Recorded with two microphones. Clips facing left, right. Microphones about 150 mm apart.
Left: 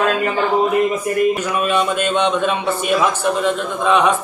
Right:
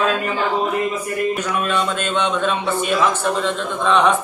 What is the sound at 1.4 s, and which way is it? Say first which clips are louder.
A man's voice: left 3 dB; 10° left (ahead or behind).